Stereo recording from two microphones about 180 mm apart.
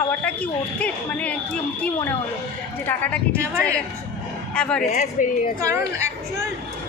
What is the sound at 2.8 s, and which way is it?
Speech, 10° left (ahead or behind).